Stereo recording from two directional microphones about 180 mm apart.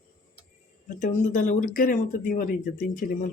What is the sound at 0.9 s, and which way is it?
Speech, 45° left (ahead or behind).